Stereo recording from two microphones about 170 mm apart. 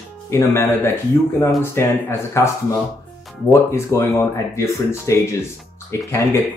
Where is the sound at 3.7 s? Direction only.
15° left (ahead or behind).